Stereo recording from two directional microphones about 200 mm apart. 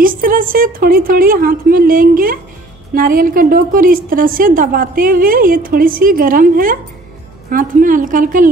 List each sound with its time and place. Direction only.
0.0 s a woman's voice: 45° right (ahead or behind)